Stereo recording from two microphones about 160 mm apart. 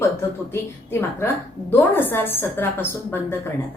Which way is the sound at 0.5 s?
15° left (ahead or behind).